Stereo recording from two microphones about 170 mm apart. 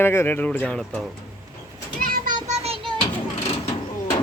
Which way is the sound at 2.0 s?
55° right (ahead or behind).